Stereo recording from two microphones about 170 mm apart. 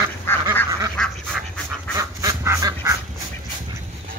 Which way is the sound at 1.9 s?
20° right (ahead or behind).